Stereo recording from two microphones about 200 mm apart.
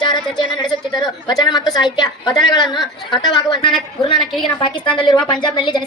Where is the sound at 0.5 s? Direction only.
20° left (ahead or behind).